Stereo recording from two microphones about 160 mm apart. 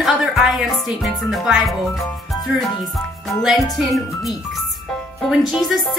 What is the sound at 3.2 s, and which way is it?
Speech, centre (ahead or behind).